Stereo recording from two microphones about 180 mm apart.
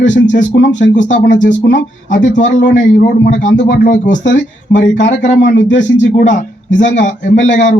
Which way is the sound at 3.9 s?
45° left (ahead or behind).